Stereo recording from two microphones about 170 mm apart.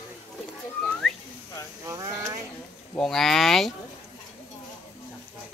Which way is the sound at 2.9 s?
5° left (ahead or behind).